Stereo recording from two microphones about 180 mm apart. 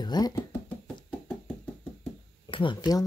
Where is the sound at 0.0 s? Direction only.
20° left (ahead or behind).